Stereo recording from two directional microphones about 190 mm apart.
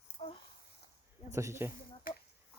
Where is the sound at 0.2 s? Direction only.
30° left (ahead or behind).